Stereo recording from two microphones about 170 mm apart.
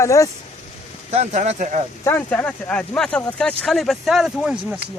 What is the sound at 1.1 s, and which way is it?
Speech, 40° right (ahead or behind).